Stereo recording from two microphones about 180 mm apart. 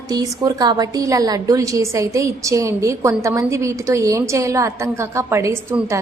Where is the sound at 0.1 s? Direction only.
20° right (ahead or behind).